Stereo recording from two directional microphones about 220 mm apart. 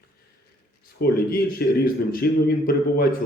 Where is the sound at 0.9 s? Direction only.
45° left (ahead or behind).